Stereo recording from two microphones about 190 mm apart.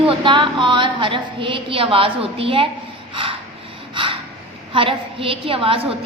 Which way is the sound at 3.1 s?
30° right (ahead or behind).